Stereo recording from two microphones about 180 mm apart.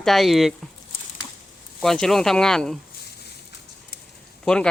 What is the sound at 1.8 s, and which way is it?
Speech, centre (ahead or behind).